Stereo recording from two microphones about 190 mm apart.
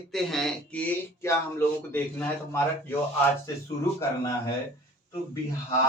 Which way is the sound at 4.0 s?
15° left (ahead or behind).